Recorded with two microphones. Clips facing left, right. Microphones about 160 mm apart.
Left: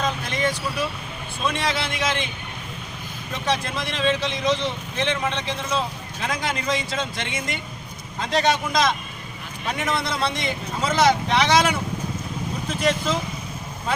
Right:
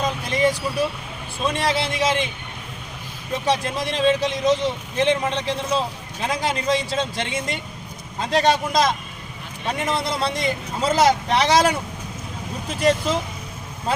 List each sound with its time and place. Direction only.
0.3 s vehicle: 35° right (ahead or behind)
1.5 s speech: 35° right (ahead or behind)
3.4 s speech: 35° right (ahead or behind)